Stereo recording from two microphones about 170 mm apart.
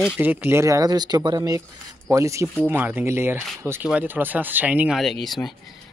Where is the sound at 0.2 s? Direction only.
10° right (ahead or behind).